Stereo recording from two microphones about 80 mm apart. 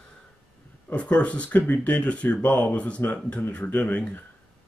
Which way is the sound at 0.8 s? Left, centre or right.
Centre.